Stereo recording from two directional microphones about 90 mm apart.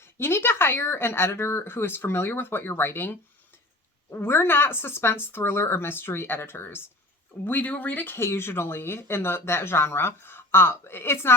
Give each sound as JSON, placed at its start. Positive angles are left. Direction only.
{"t": 0.0, "sound": "speech", "side_deg": 25}